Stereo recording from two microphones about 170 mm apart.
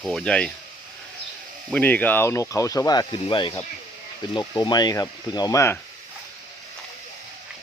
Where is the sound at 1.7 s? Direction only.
10° left (ahead or behind).